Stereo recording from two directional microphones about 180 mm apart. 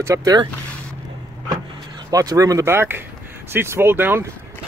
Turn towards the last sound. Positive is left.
turn(degrees=-10)  # may be behind; listen again after turning